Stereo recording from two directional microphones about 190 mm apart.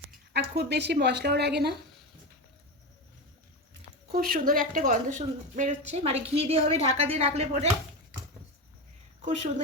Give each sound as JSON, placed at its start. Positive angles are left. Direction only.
{"t": 0.3, "sound": "speech", "side_deg": -60}
{"t": 4.1, "sound": "a woman's voice", "side_deg": -50}